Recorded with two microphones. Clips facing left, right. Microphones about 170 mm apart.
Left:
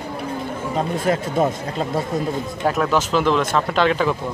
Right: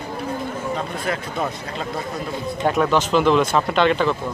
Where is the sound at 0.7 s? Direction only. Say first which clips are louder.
Left 9 dB; 45° left (ahead or behind).